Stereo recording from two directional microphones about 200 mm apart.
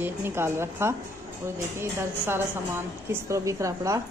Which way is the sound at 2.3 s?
10° right (ahead or behind).